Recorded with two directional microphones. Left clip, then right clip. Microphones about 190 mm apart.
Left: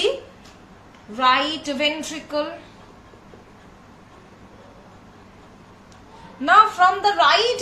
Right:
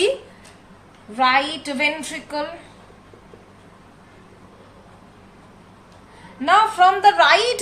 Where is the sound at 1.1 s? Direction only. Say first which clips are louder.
Right 1 dB; 30° right (ahead or behind).